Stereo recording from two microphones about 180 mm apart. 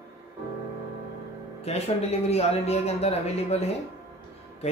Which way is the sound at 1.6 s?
35° left (ahead or behind).